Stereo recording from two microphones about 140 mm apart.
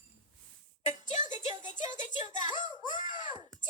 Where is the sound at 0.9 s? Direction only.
60° left (ahead or behind).